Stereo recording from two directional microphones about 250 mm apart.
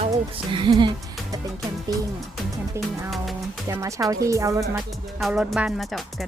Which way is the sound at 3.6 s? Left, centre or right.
Centre.